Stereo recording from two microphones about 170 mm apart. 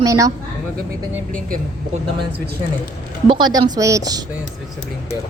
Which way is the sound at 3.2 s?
25° right (ahead or behind).